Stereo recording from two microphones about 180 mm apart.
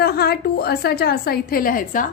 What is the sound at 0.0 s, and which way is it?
A woman's voice, 60° left (ahead or behind).